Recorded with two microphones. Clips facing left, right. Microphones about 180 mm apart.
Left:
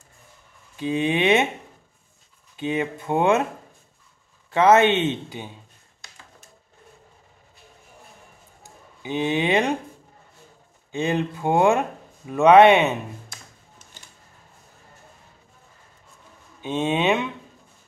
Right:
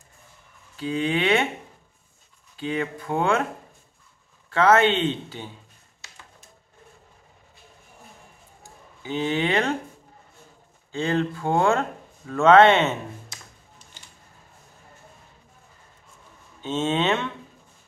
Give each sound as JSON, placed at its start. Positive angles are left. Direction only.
{"t": 0.7, "sound": "speech", "side_deg": 20}
{"t": 2.5, "sound": "speech", "side_deg": 20}
{"t": 4.5, "sound": "speech", "side_deg": 20}
{"t": 9.0, "sound": "speech", "side_deg": 15}
{"t": 10.9, "sound": "speech", "side_deg": 20}
{"t": 16.6, "sound": "speech", "side_deg": 15}